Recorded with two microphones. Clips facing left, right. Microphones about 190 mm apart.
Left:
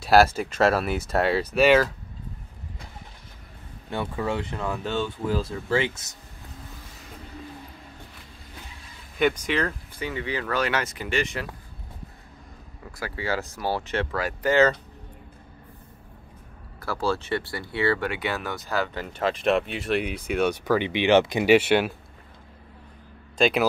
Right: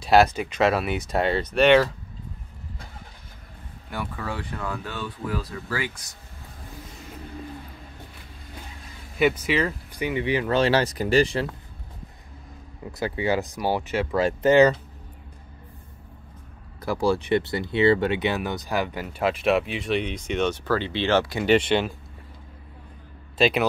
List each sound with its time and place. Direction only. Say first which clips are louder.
0.0 s speech: even; 5° left (ahead or behind)
3.9 s speech: left 4 dB; 25° left (ahead or behind)
9.2 s speech: right 2 dB; 5° right (ahead or behind)
9.9 s speech: right 7 dB; 15° right (ahead or behind); by 11.4 s 35° right (ahead or behind)
13.0 s speech: right 5 dB; 20° right (ahead or behind)
16.8 s speech: right 4 dB; 15° right (ahead or behind); by 21.5 s 20° left (ahead or behind)
21.5 s speech: even; 10° left (ahead or behind)
23.3 s speech: even; centre (ahead or behind)